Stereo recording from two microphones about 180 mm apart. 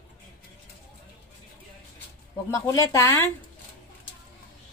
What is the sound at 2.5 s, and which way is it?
Speech, 15° left (ahead or behind).